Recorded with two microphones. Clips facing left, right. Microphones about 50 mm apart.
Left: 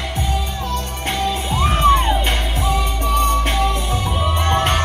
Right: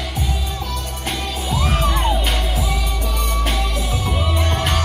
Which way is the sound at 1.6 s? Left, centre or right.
Left.